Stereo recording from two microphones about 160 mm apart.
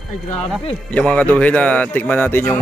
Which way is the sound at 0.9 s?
10° left (ahead or behind).